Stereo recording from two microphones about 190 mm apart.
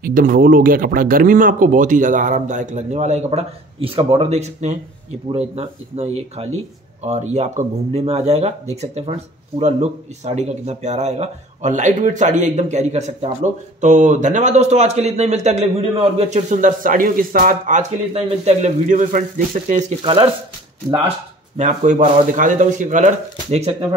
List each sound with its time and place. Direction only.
0.0 s speech: 45° right (ahead or behind)
20.0 s speech: 30° right (ahead or behind)
21.5 s speech: 40° right (ahead or behind)